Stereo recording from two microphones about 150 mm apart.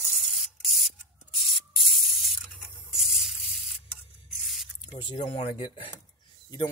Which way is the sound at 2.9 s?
5° right (ahead or behind).